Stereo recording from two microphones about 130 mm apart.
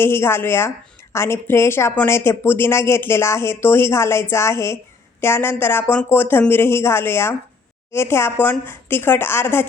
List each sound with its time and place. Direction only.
0.0 s a woman's voice: 20° left (ahead or behind)